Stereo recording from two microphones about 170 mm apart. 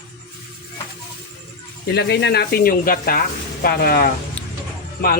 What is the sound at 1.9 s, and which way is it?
Speech, 70° left (ahead or behind).